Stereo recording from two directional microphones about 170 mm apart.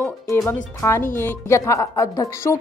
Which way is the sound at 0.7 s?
15° left (ahead or behind).